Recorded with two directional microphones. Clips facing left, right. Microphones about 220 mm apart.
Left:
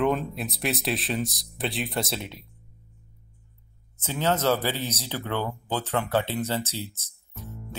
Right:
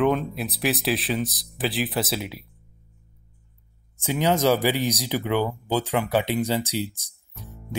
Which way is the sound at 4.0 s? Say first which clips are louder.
Right 4 dB; 15° right (ahead or behind).